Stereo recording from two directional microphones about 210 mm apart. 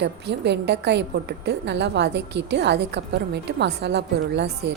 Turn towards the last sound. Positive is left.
turn(degrees=-55)  # may be behind; listen again after turning